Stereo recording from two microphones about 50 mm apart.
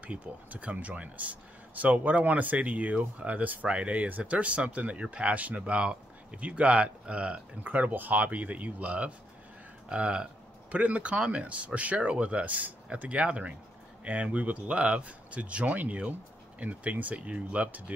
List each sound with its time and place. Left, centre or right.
0.0 s speech: right
7.6 s speech: right